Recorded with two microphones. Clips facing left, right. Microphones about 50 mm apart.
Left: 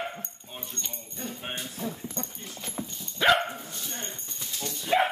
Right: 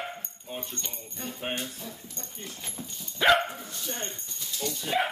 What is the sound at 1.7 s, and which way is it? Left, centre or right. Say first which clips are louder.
Keys jangling: left 8 dB; left.